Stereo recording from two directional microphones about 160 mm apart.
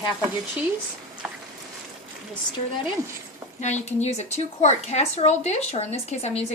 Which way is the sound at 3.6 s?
45° left (ahead or behind).